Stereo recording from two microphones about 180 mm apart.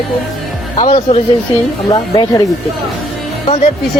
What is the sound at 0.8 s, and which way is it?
Speech, 35° left (ahead or behind).